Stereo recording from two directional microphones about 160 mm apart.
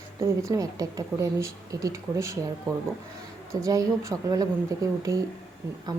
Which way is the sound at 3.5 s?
20° right (ahead or behind).